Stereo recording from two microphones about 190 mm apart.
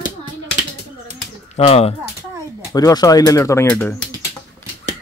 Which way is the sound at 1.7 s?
35° left (ahead or behind).